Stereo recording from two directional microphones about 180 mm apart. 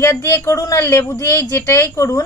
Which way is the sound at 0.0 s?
15° left (ahead or behind).